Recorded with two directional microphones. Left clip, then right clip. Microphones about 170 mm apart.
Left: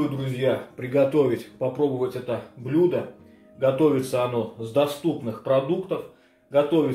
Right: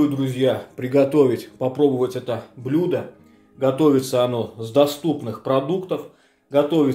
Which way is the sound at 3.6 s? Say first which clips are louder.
Right 3 dB; 55° right (ahead or behind).